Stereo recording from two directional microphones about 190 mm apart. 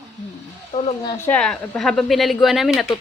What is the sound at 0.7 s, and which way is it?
Speech, 30° left (ahead or behind).